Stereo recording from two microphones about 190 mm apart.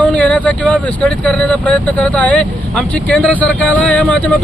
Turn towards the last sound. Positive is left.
turn(degrees=5)  # may be behind; listen again after turning